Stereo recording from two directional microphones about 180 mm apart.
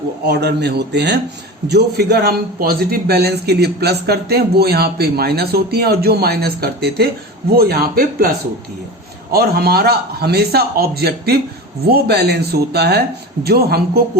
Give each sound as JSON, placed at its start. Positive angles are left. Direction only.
{"t": 0.3, "sound": "a man's voice", "side_deg": -65}
{"t": 9.3, "sound": "a man's voice", "side_deg": -60}